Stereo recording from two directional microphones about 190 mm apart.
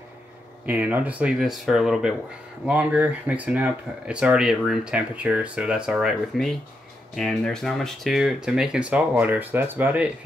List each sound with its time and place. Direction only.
0.7 s speech: 10° right (ahead or behind)